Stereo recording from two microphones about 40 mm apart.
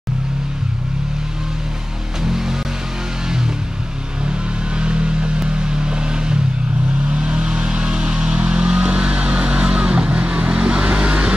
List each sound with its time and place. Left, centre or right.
2.2 s music: centre
4.3 s a sound: right
7.1 s vehicle: right